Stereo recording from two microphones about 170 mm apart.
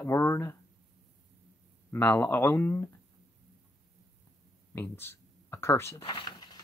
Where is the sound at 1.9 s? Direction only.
10° left (ahead or behind).